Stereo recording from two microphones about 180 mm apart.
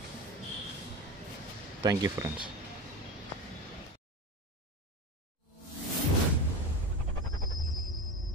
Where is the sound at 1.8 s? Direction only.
20° right (ahead or behind).